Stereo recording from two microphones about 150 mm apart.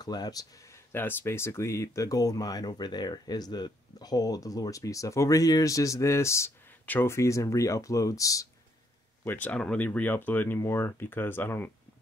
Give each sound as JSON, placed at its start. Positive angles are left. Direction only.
{"t": 0.0, "sound": "speech", "side_deg": 25}
{"t": 9.2, "sound": "speech", "side_deg": 10}